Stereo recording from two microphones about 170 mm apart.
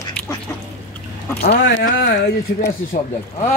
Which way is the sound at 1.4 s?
70° left (ahead or behind).